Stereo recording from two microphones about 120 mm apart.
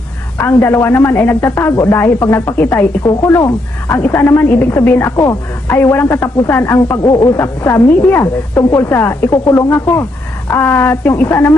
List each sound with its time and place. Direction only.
0.3 s a man's voice: 20° left (ahead or behind)